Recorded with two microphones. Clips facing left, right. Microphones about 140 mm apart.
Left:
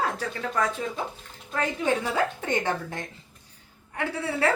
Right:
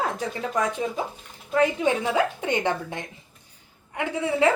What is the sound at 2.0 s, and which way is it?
A woman's voice, 15° right (ahead or behind).